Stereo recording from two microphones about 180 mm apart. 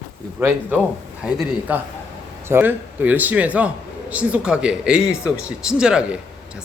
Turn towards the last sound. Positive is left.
turn(degrees=-5)  # may be behind; listen again after turning